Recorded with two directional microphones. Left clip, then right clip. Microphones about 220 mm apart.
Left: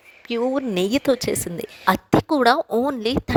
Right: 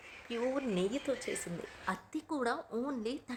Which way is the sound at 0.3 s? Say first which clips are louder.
Left 13 dB; 40° left (ahead or behind).